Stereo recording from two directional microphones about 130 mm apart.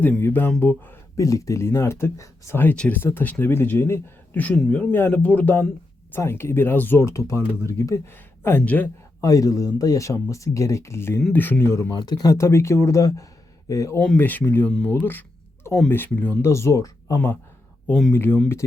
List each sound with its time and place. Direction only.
0.0 s speech: 15° left (ahead or behind)
9.2 s speech: 25° left (ahead or behind)
14.0 s speech: 10° left (ahead or behind)
17.8 s speech: centre (ahead or behind)
18.1 s speech: 15° left (ahead or behind)